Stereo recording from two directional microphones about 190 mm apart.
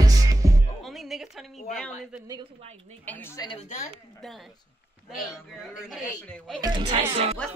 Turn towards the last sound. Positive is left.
turn(degrees=-30)  # may be behind; listen again after turning